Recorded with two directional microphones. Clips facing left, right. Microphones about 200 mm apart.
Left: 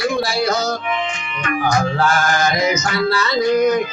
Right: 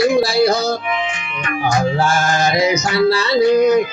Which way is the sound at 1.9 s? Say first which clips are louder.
Right 1 dB; 25° right (ahead or behind).